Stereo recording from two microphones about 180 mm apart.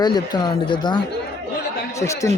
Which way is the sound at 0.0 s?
25° left (ahead or behind).